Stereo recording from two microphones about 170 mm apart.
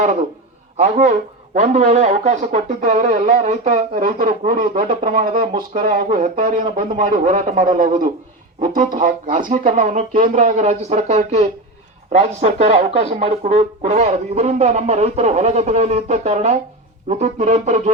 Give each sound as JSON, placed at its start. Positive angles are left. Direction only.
{"t": 0.8, "sound": "speech", "side_deg": -45}